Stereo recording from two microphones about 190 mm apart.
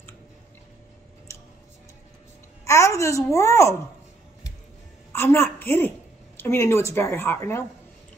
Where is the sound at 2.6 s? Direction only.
15° left (ahead or behind).